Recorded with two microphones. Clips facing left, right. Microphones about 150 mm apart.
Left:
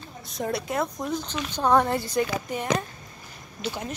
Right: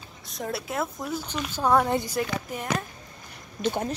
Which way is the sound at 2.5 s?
Centre (ahead or behind).